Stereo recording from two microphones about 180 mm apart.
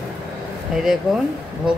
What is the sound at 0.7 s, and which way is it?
Speech, centre (ahead or behind).